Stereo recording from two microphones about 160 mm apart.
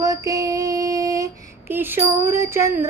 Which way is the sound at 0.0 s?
20° right (ahead or behind).